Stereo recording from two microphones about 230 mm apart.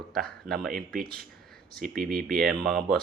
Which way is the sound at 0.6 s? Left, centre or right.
Right.